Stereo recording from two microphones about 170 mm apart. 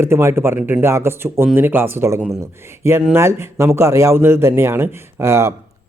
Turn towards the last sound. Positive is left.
turn(degrees=-15)  # may be behind; listen again after turning